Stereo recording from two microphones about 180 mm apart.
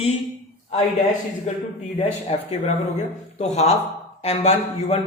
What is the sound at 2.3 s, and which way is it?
Speech, 35° left (ahead or behind).